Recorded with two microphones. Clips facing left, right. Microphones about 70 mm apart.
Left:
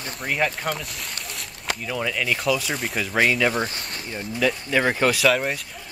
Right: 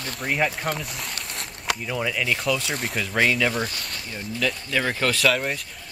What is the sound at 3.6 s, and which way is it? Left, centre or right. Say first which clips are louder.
Speech: left 1 dB; left.